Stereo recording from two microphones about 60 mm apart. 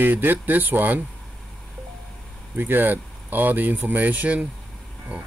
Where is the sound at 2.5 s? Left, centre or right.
Right.